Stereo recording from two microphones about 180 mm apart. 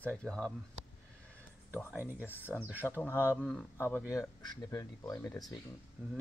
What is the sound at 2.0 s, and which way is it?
Speech, 10° right (ahead or behind).